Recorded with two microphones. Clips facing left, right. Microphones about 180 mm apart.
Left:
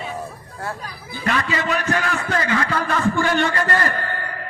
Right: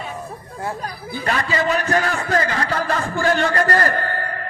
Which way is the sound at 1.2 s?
40° right (ahead or behind).